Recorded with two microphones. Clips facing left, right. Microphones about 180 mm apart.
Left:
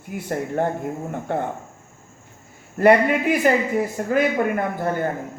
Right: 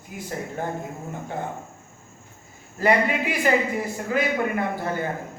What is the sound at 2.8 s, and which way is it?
A man's voice, 50° left (ahead or behind).